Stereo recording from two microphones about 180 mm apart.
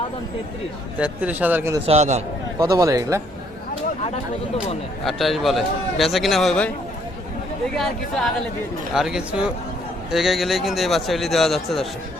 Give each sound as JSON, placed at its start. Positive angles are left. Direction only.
{"t": 0.9, "sound": "speech", "side_deg": -10}
{"t": 1.9, "sound": "a man's voice", "side_deg": -40}
{"t": 2.6, "sound": "speech", "side_deg": -20}
{"t": 5.0, "sound": "a man's voice", "side_deg": 0}
{"t": 7.8, "sound": "a man's voice", "side_deg": 0}